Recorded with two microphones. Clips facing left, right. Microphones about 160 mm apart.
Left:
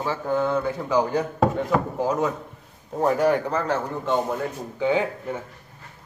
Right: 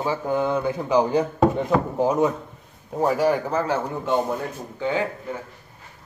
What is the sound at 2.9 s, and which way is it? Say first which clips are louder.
Speech: even; 5° right (ahead or behind).